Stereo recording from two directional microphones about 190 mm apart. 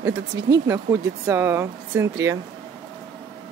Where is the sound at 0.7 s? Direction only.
15° right (ahead or behind).